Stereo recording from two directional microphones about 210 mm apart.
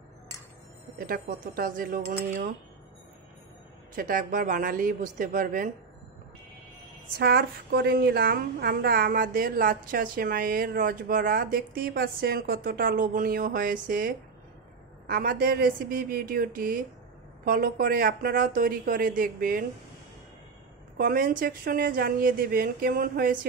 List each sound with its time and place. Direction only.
0.9 s speech: 40° right (ahead or behind)
3.9 s speech: 40° right (ahead or behind)
7.2 s a woman's voice: 45° right (ahead or behind)
21.0 s a woman's voice: 40° right (ahead or behind)